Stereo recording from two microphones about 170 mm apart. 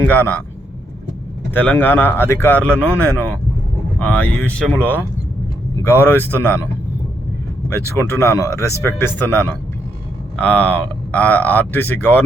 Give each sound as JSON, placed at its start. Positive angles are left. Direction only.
{"t": 0.0, "sound": "speech", "side_deg": 10}
{"t": 1.5, "sound": "speech", "side_deg": 10}
{"t": 7.9, "sound": "speech", "side_deg": 15}
{"t": 10.4, "sound": "speech", "side_deg": 10}